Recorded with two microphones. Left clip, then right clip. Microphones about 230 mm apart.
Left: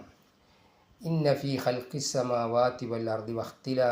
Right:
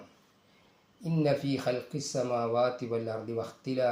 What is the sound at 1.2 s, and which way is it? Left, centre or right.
Speech, left.